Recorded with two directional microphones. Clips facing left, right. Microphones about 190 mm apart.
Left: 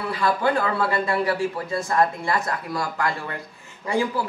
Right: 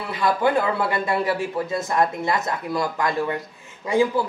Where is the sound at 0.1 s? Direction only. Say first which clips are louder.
Right 2 dB; 20° right (ahead or behind).